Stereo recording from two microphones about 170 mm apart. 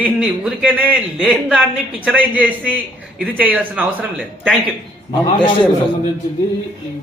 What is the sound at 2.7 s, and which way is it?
Speech, 5° left (ahead or behind).